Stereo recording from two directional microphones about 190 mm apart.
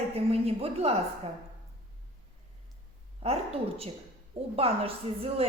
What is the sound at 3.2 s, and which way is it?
A woman's voice, 30° right (ahead or behind).